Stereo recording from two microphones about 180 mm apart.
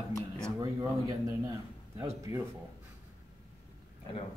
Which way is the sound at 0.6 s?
20° right (ahead or behind).